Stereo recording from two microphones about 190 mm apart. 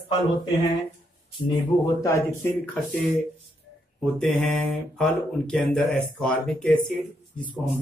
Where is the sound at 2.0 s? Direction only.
15° left (ahead or behind).